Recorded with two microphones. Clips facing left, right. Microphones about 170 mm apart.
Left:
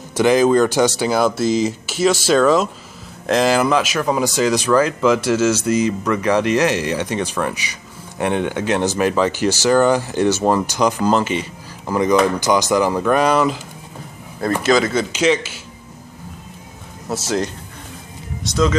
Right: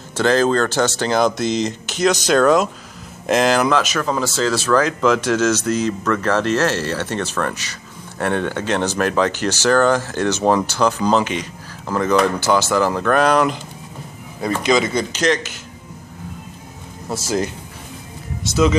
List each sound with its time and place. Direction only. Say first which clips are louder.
0.1 s speech: left 3 dB; 15° left (ahead or behind)
14.7 s speech: left 1 dB; centre (ahead or behind)
17.1 s speech: even; centre (ahead or behind)